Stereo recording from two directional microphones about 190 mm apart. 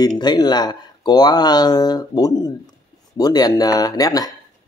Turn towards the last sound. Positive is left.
turn(degrees=20)  # may be behind; listen again after turning